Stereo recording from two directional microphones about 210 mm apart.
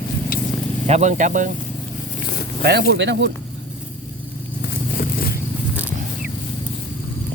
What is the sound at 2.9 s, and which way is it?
Speech, 55° right (ahead or behind).